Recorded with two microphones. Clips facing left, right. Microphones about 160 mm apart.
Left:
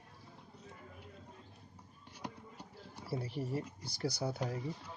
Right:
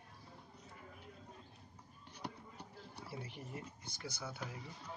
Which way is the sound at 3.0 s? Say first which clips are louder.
Left 11 dB; 35° left (ahead or behind).